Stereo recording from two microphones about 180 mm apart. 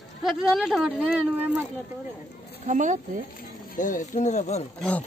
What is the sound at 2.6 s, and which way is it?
Speech, 45° right (ahead or behind).